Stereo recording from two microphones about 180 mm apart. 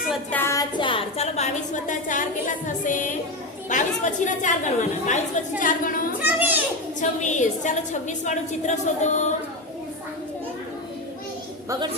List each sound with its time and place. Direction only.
0.1 s a woman's voice: 10° left (ahead or behind); by 6.1 s 50° left (ahead or behind)
6.2 s a child's voice: 10° right (ahead or behind)
7.0 s a woman's voice: 40° left (ahead or behind)